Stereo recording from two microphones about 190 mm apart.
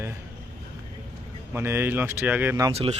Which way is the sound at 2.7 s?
30° right (ahead or behind).